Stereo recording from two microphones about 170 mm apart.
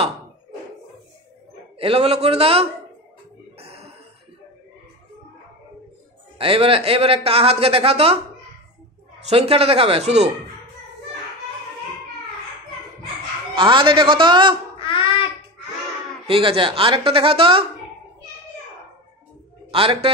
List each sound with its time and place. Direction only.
1.8 s speech: 35° right (ahead or behind)
3.5 s cough: 35° right (ahead or behind)
6.3 s speech: 35° right (ahead or behind)
9.2 s speech: 35° right (ahead or behind)
13.6 s a man's voice: 30° right (ahead or behind)
14.8 s a sound: 30° left (ahead or behind)
16.3 s speech: 30° right (ahead or behind)
19.7 s speech: 30° right (ahead or behind)